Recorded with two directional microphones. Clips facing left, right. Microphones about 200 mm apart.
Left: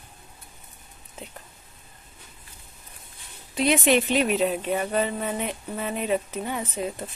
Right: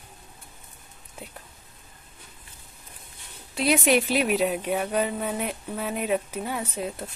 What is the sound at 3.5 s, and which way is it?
Speech, 5° right (ahead or behind).